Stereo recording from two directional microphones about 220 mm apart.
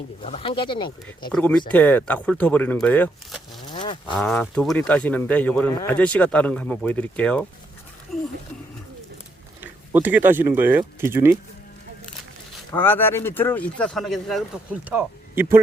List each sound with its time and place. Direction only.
0.2 s speech: 25° left (ahead or behind)
1.3 s speech: 5° left (ahead or behind)
3.7 s livestock: 20° left (ahead or behind)
4.1 s speech: centre (ahead or behind)
9.6 s speech: 10° right (ahead or behind)
12.7 s speech: 10° left (ahead or behind); by 15.6 s 10° right (ahead or behind)